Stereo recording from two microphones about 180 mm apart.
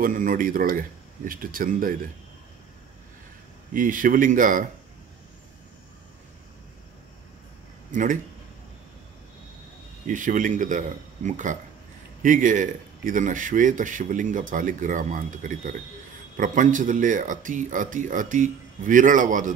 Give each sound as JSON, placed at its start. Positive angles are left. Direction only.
{"t": 0.0, "sound": "a man's voice", "side_deg": -50}
{"t": 3.7, "sound": "a man's voice", "side_deg": -50}
{"t": 7.9, "sound": "speech", "side_deg": -45}
{"t": 10.0, "sound": "a man's voice", "side_deg": -45}